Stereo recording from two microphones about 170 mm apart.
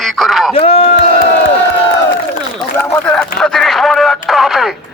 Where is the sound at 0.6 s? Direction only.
70° left (ahead or behind).